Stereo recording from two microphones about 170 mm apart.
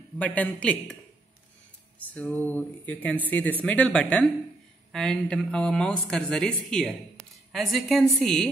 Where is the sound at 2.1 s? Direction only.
10° left (ahead or behind).